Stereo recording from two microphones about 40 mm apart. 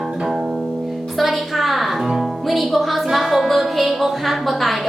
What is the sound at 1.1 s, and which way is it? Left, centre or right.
Music, centre.